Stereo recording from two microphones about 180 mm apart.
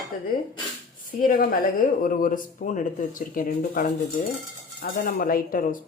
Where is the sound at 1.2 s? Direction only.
50° left (ahead or behind).